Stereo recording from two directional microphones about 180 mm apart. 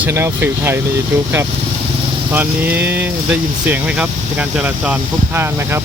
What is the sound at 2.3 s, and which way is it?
Speech, 10° right (ahead or behind).